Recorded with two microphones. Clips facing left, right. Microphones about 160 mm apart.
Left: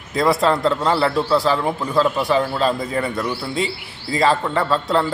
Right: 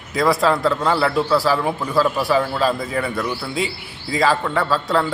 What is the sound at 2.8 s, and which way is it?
Speech, 20° left (ahead or behind).